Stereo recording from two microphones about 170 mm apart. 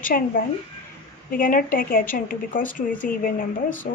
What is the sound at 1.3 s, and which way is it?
A woman's voice, 55° left (ahead or behind).